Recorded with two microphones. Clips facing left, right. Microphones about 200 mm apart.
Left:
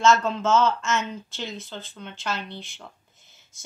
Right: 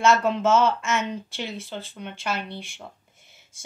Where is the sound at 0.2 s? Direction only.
15° right (ahead or behind).